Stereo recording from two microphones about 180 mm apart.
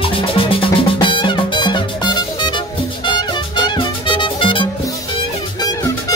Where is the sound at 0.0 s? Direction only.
30° left (ahead or behind).